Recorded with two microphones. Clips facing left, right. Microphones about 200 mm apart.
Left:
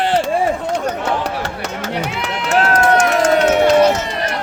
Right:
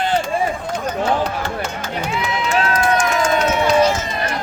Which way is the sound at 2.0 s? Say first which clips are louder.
Even; 70° left (ahead or behind).